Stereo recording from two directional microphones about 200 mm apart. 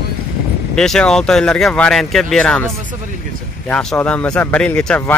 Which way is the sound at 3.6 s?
5° left (ahead or behind).